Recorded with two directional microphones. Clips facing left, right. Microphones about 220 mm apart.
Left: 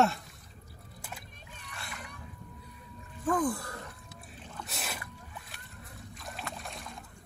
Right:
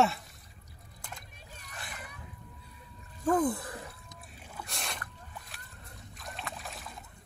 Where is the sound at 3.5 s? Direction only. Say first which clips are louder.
Right 1 dB; 20° right (ahead or behind).